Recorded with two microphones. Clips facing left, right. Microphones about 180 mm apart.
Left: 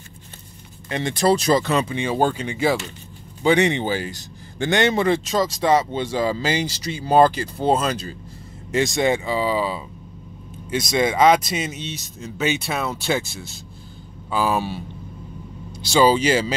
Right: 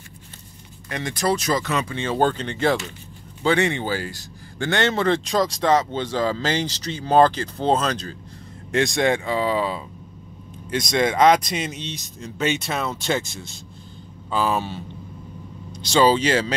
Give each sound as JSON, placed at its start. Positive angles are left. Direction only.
{"t": 0.8, "sound": "speech", "side_deg": 25}
{"t": 1.9, "sound": "a man's voice", "side_deg": 15}
{"t": 3.4, "sound": "a man's voice", "side_deg": 20}